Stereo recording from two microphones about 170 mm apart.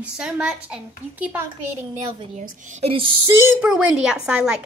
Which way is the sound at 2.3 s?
40° right (ahead or behind).